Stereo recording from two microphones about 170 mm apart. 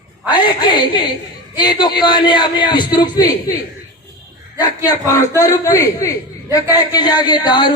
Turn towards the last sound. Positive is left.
turn(degrees=25)  # may be behind; listen again after turning